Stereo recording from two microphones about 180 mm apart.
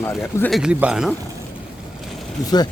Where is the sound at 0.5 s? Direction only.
5° right (ahead or behind).